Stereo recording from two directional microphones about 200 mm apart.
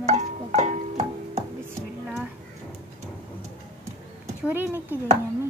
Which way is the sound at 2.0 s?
5° right (ahead or behind).